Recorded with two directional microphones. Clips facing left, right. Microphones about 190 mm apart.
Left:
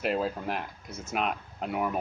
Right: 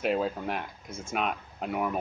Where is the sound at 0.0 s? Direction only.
Centre (ahead or behind).